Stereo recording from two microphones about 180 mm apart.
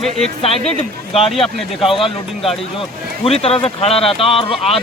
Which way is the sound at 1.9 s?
30° left (ahead or behind).